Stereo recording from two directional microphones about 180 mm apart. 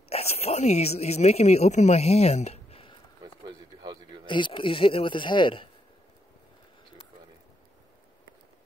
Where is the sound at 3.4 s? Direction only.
25° right (ahead or behind).